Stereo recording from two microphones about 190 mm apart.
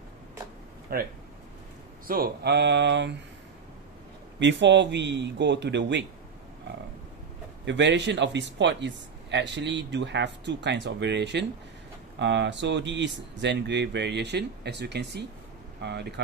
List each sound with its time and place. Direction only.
0.9 s speech: 50° right (ahead or behind); by 3.2 s 70° right (ahead or behind)
4.4 s a man's voice: 70° right (ahead or behind)
7.6 s a man's voice: 70° right (ahead or behind)